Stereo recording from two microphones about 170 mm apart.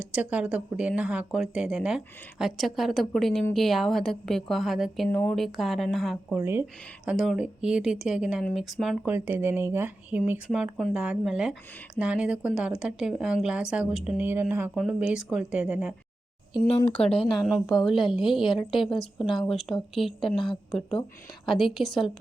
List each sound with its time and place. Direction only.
0.0 s speech: 5° right (ahead or behind)
6.3 s speech: 15° right (ahead or behind)
9.0 s speech: 10° right (ahead or behind)
16.5 s a woman's voice: 25° left (ahead or behind)
17.3 s speech: centre (ahead or behind)
18.4 s a woman's voice: 30° left (ahead or behind)
18.9 s speech: centre (ahead or behind)
21.4 s speech: centre (ahead or behind)